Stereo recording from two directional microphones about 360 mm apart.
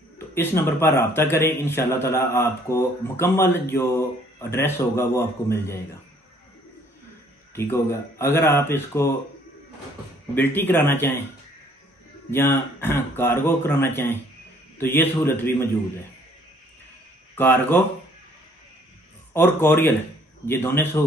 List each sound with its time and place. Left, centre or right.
0.3 s a man's voice: centre
7.5 s a man's voice: centre
10.3 s speech: centre
12.3 s a man's voice: centre
17.4 s speech: centre
19.3 s speech: centre